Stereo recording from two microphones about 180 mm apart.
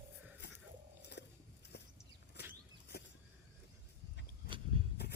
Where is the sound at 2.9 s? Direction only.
60° left (ahead or behind).